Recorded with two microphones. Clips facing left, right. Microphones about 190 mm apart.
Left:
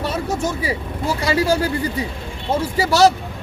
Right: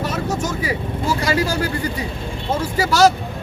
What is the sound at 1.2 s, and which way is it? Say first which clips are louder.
Speech: left 5 dB; 25° left (ahead or behind).